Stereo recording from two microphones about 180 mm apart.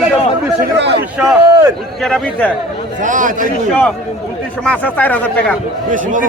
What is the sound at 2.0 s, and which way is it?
Speech, 5° left (ahead or behind).